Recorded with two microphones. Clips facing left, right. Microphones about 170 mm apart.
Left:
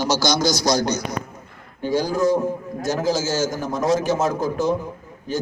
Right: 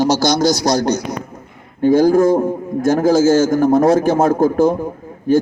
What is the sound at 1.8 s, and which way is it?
A man's voice, 50° right (ahead or behind).